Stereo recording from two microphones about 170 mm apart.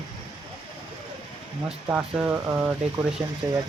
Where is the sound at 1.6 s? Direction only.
5° right (ahead or behind).